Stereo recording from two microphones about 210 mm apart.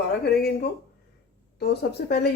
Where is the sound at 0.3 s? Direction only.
50° left (ahead or behind).